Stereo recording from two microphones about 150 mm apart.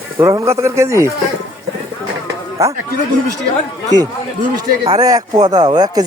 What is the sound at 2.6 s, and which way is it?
Speech, 20° right (ahead or behind).